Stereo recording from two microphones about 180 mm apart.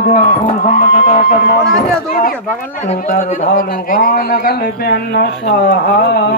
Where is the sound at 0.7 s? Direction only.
45° left (ahead or behind).